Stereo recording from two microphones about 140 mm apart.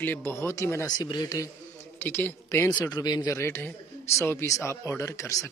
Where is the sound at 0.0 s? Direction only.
15° left (ahead or behind).